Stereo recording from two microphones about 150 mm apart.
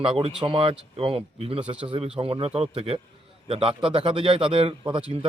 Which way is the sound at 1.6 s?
10° right (ahead or behind).